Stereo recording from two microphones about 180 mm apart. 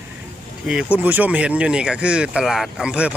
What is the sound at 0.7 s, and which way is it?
Speech, 5° right (ahead or behind).